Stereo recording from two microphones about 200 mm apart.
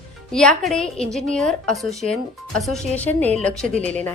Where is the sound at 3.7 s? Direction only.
35° right (ahead or behind).